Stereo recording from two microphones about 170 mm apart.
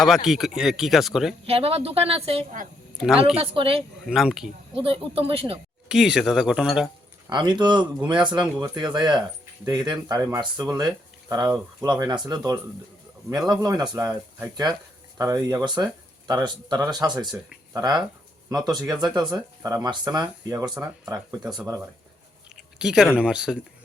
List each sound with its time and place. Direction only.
0.0 s speech: centre (ahead or behind)
1.5 s a woman's voice: 35° right (ahead or behind)
4.0 s speech: centre (ahead or behind)
4.7 s a woman's voice: 30° right (ahead or behind)
5.9 s speech: 5° right (ahead or behind)
7.3 s speech: 25° right (ahead or behind)
13.5 s speech: 25° right (ahead or behind)
14.1 s speech: 10° right (ahead or behind)
14.5 s speech: 25° right (ahead or behind)
20.7 s speech: 10° right (ahead or behind)
21.1 s speech: 20° right (ahead or behind)
22.4 s a sound: 5° right (ahead or behind)
23.2 s speech: 5° right (ahead or behind)